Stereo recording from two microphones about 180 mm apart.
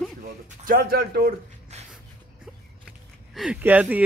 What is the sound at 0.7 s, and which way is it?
Speech, 55° right (ahead or behind).